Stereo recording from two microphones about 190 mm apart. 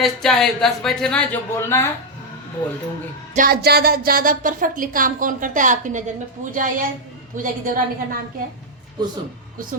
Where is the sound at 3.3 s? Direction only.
50° right (ahead or behind).